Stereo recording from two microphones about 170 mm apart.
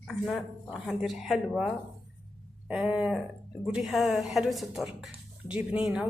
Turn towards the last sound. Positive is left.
turn(degrees=-5)  # may be behind; listen again after turning